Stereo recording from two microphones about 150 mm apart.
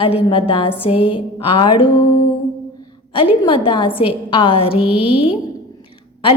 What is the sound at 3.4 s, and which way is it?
A woman's voice, 35° left (ahead or behind).